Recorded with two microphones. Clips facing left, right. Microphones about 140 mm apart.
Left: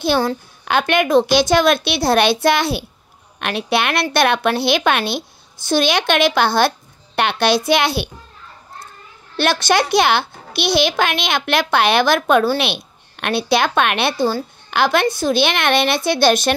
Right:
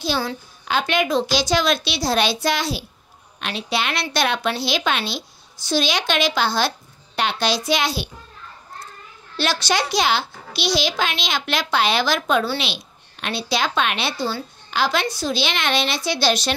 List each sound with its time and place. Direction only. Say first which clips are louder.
0.0 s a woman's voice: left 7 dB; 50° left (ahead or behind)
9.4 s a woman's voice: left 5 dB; 55° left (ahead or behind)